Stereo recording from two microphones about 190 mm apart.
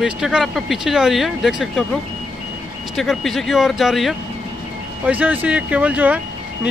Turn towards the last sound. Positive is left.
turn(degrees=-10)  # may be behind; listen again after turning